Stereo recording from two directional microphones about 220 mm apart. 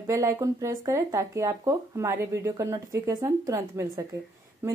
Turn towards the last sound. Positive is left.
turn(degrees=-10)  # may be behind; listen again after turning